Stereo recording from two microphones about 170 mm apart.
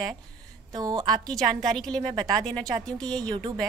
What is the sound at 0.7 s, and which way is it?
Speech, 25° right (ahead or behind).